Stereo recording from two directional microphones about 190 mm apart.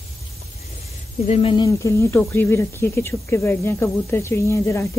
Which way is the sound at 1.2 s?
30° left (ahead or behind).